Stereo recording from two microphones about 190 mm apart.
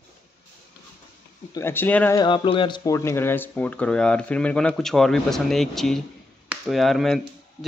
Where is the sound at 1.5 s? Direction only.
10° left (ahead or behind).